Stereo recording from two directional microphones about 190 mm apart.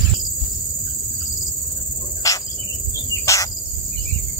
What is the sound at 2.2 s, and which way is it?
Cricket, 15° left (ahead or behind).